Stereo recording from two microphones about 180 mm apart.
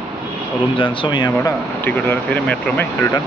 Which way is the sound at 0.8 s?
30° left (ahead or behind).